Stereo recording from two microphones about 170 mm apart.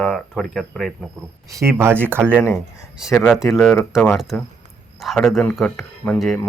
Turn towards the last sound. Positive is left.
turn(degrees=5)  # may be behind; listen again after turning